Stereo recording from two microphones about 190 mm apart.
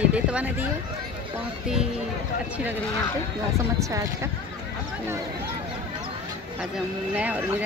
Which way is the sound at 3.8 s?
15° right (ahead or behind).